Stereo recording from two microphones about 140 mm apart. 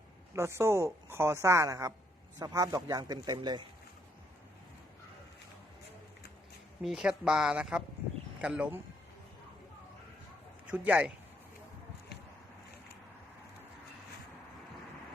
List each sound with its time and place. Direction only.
0.3 s a woman's voice: 20° right (ahead or behind)
6.8 s a woman's voice: 5° right (ahead or behind)
10.7 s speech: 10° right (ahead or behind)